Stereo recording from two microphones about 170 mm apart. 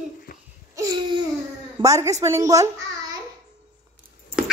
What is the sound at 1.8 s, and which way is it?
Speech, 20° right (ahead or behind).